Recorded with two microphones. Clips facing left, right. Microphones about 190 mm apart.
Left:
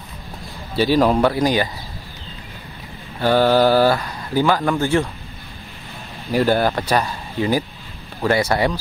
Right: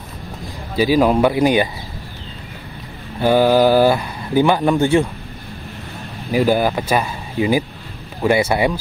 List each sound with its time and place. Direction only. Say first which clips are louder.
0.7 s speech: right 2 dB; 10° right (ahead or behind)
3.2 s speech: right 2 dB; 10° right (ahead or behind)
6.3 s speech: right 1 dB; 10° right (ahead or behind)